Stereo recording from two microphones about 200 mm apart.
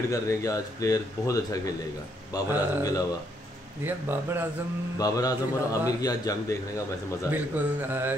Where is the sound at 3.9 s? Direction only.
10° right (ahead or behind).